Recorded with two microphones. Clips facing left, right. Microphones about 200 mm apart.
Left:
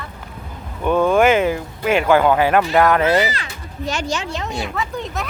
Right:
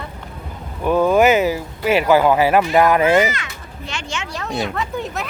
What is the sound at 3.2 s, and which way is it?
Speech, 35° left (ahead or behind).